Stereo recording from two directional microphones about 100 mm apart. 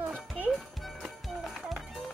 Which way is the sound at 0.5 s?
Centre (ahead or behind).